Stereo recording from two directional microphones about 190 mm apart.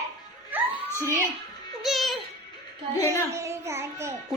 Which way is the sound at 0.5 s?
10° right (ahead or behind).